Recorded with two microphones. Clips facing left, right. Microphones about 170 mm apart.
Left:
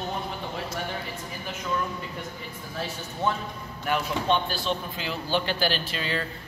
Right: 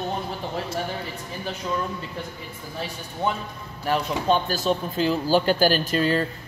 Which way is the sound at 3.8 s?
35° right (ahead or behind).